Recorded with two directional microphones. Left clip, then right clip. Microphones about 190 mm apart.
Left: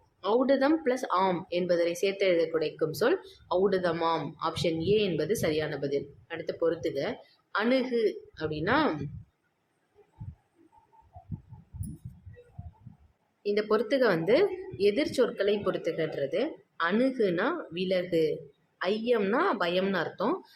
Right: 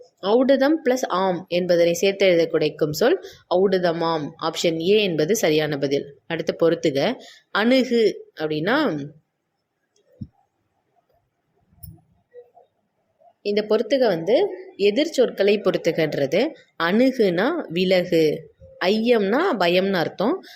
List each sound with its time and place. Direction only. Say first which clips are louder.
0.2 s speech: right 7 dB; 25° right (ahead or behind)
13.4 s a woman's voice: right 6 dB; 20° right (ahead or behind)